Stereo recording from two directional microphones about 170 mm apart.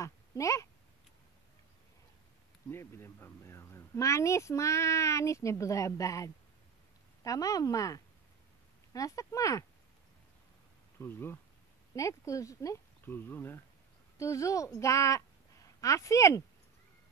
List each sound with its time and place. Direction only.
0.0 s speech: 20° left (ahead or behind)
2.7 s speech: 15° left (ahead or behind)
11.0 s a woman's voice: 15° left (ahead or behind)